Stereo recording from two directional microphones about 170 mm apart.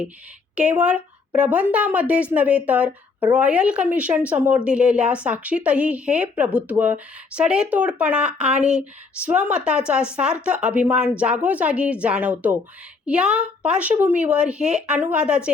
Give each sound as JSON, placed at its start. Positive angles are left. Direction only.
{"t": 0.5, "sound": "a woman's voice", "side_deg": -5}